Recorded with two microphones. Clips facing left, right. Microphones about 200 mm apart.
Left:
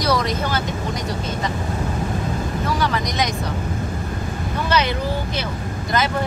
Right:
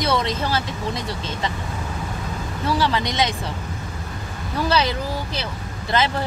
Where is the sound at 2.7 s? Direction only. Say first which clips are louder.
Right 3 dB; 30° right (ahead or behind).